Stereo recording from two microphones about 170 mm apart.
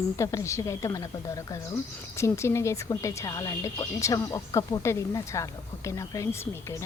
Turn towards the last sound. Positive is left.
turn(degrees=20)  # may be behind; listen again after turning